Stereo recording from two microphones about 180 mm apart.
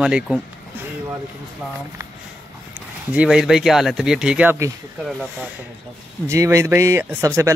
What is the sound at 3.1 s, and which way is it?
Speech, 5° right (ahead or behind).